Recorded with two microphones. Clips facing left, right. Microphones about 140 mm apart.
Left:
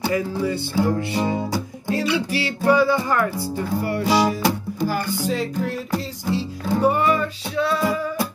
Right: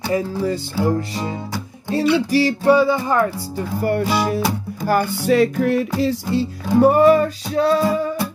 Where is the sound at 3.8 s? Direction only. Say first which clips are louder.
Right 9 dB; 55° right (ahead or behind).